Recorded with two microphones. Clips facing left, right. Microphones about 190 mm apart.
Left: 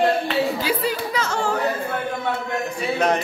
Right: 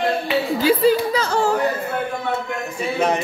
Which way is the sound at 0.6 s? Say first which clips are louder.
Right 8 dB; 30° right (ahead or behind).